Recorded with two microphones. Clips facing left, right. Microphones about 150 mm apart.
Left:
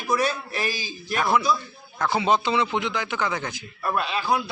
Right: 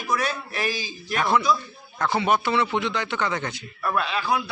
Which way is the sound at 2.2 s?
20° left (ahead or behind).